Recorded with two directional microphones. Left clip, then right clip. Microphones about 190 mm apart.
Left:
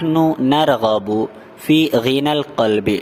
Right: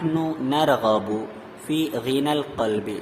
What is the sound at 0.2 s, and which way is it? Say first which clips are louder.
A man's voice: left 9 dB; 45° left (ahead or behind).